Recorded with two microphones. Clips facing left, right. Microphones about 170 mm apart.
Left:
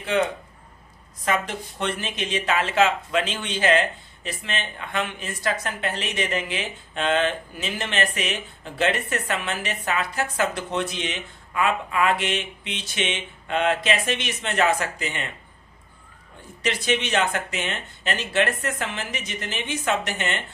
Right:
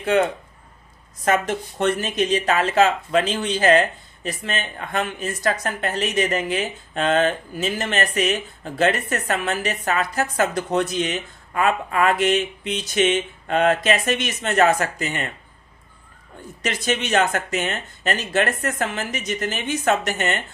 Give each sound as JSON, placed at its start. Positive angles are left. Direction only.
{"t": 0.0, "sound": "speech", "side_deg": -50}
{"t": 16.6, "sound": "speech", "side_deg": -45}